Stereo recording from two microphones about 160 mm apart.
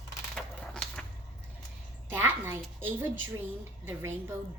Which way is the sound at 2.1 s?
15° right (ahead or behind).